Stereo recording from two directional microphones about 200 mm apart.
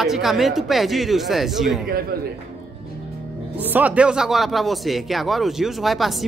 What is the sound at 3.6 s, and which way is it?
Speech, 10° right (ahead or behind).